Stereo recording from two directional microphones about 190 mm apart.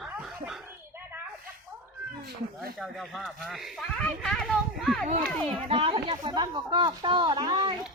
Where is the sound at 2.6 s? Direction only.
Centre (ahead or behind).